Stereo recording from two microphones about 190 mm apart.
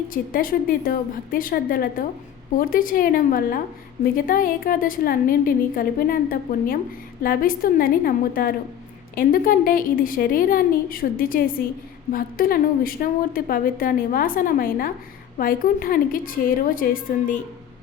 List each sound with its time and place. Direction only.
0.1 s a woman's voice: 50° left (ahead or behind)